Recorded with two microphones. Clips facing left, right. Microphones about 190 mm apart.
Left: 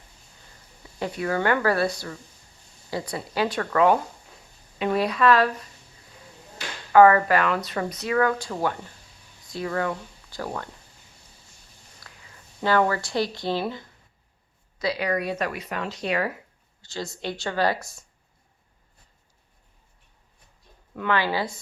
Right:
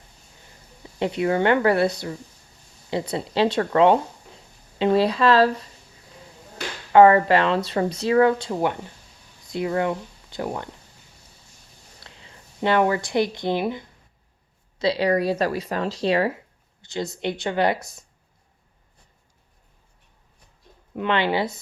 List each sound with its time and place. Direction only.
0.9 s speech: 25° right (ahead or behind)
2.9 s speech: 25° right (ahead or behind)
6.9 s speech: 25° right (ahead or behind)
11.9 s speech: 25° right (ahead or behind)
14.8 s speech: 30° right (ahead or behind)
16.8 s a woman's voice: 20° right (ahead or behind)
20.9 s speech: 20° right (ahead or behind)